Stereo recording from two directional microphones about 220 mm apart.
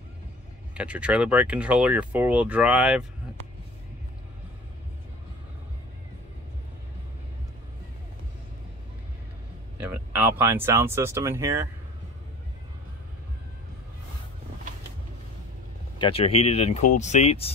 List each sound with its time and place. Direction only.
0.7 s speech: 5° right (ahead or behind)
9.8 s speech: 10° right (ahead or behind)
16.0 s speech: 25° left (ahead or behind)